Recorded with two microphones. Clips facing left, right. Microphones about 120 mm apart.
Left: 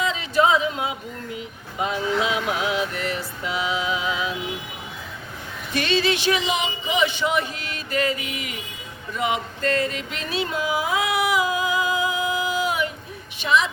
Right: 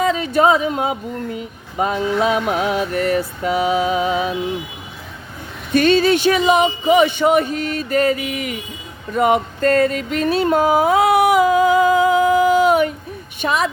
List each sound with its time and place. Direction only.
0.0 s speech: 50° right (ahead or behind)
5.7 s speech: 45° right (ahead or behind)
9.1 s a sound: 45° right (ahead or behind)
13.4 s speech: 50° right (ahead or behind)